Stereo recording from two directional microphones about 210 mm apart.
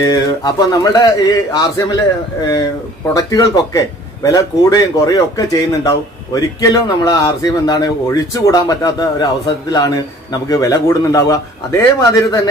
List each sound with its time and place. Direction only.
0.0 s a man's voice: 20° left (ahead or behind)
3.2 s a man's voice: 15° left (ahead or behind)